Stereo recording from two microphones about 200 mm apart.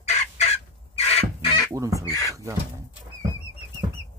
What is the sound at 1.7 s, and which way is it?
Speech, 15° right (ahead or behind).